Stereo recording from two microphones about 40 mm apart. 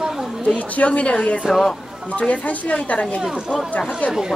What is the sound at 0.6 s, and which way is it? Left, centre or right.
Speech, left.